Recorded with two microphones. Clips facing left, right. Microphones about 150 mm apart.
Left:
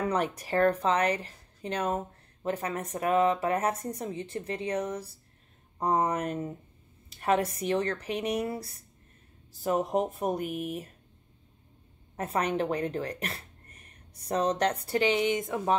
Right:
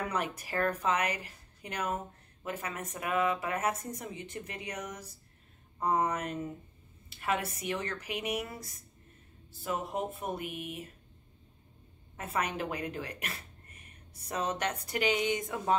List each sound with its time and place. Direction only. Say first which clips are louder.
0.1 s a woman's voice: left 6 dB; 35° left (ahead or behind)
9.6 s speech: left 7 dB; 40° left (ahead or behind)
12.2 s a woman's voice: left 5 dB; 35° left (ahead or behind)